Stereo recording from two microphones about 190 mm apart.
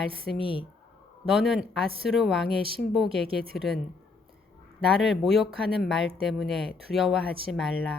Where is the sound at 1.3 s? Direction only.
Centre (ahead or behind).